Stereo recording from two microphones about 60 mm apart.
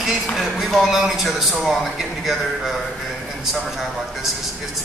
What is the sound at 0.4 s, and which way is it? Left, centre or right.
A man's voice, centre.